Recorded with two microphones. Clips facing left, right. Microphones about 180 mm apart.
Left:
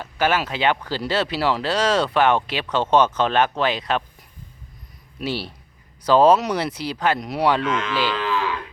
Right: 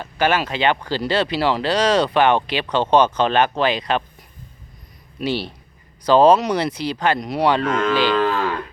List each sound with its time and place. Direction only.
0.0 s speech: 5° left (ahead or behind)
5.2 s speech: 5° left (ahead or behind)
7.6 s speech: 35° right (ahead or behind)
7.9 s moo: 45° right (ahead or behind)